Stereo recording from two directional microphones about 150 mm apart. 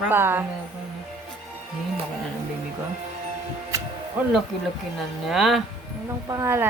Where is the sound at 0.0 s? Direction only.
15° right (ahead or behind).